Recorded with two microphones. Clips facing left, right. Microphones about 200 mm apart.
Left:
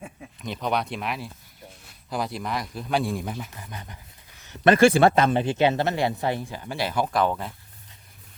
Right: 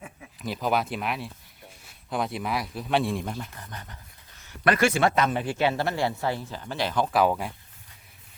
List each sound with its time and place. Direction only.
0.4 s speech: 5° right (ahead or behind)
4.4 s speech: 25° left (ahead or behind)
7.1 s speech: 5° right (ahead or behind)